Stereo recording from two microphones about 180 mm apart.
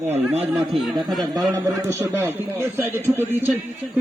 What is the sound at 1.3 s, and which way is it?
A man's voice, 15° right (ahead or behind).